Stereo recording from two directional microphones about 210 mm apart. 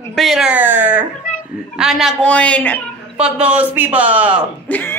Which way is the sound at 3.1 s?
5° right (ahead or behind).